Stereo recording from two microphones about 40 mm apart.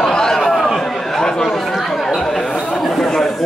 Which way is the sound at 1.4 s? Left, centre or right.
Centre.